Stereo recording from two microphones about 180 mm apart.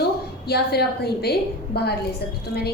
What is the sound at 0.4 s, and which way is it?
A woman's voice, 60° left (ahead or behind).